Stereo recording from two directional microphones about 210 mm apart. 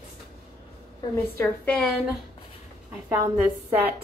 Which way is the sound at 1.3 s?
5° left (ahead or behind).